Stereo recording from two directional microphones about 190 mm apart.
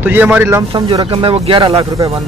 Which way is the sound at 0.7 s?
25° right (ahead or behind).